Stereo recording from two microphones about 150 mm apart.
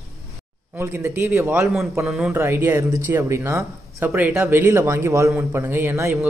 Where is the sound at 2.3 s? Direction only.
15° right (ahead or behind).